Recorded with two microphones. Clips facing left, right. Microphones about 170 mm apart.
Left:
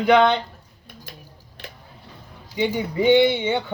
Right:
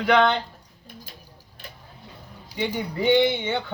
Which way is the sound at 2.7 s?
10° left (ahead or behind).